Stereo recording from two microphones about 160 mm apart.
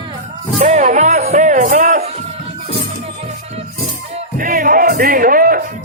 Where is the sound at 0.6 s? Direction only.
50° right (ahead or behind).